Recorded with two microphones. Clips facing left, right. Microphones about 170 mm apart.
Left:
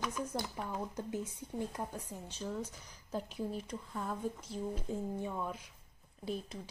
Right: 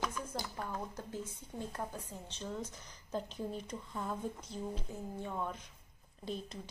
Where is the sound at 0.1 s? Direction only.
20° left (ahead or behind).